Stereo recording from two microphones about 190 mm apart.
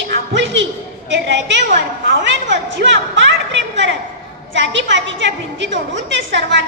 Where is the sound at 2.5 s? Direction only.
70° right (ahead or behind).